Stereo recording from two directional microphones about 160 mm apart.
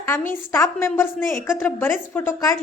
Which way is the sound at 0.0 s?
15° left (ahead or behind).